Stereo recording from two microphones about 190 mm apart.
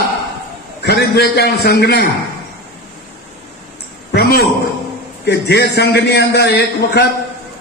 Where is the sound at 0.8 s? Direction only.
60° left (ahead or behind).